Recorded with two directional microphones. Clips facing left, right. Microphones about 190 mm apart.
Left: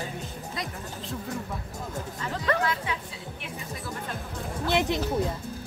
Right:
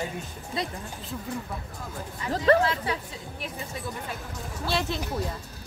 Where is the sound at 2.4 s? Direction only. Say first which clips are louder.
Right 6 dB; 30° right (ahead or behind).